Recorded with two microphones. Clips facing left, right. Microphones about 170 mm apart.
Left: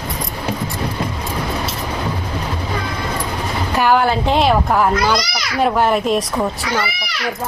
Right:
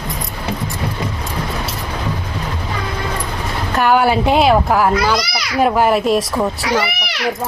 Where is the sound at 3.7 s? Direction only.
Centre (ahead or behind).